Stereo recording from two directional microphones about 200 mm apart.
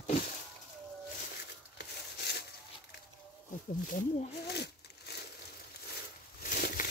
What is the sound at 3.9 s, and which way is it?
Speech, 50° left (ahead or behind).